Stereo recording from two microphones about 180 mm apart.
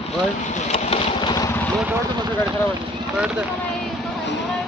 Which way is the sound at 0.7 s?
35° left (ahead or behind).